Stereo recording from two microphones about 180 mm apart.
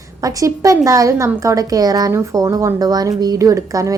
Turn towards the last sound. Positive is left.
turn(degrees=-20)  # may be behind; listen again after turning